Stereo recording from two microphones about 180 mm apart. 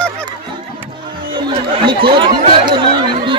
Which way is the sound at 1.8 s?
25° right (ahead or behind).